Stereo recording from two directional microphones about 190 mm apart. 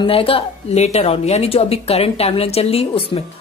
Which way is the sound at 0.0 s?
30° left (ahead or behind).